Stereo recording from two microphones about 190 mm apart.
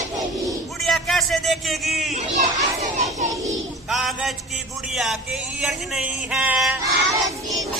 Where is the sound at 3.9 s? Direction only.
Centre (ahead or behind).